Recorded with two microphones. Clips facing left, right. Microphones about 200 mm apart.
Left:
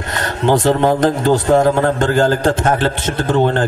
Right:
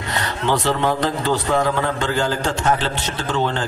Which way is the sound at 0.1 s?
50° left (ahead or behind).